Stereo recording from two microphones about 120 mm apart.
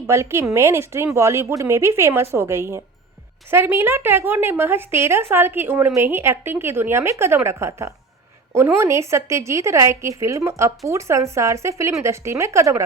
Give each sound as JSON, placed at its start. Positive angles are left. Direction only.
{"t": 0.1, "sound": "a woman's voice", "side_deg": -20}